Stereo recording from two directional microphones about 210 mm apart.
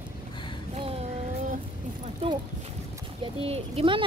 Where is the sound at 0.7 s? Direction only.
30° right (ahead or behind).